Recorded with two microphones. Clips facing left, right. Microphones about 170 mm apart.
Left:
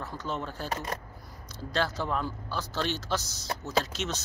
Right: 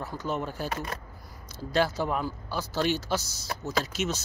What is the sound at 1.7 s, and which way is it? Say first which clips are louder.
Speech: right 4 dB; 10° right (ahead or behind).